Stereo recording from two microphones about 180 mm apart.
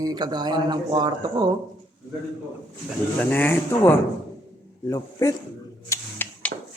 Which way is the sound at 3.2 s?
10° left (ahead or behind).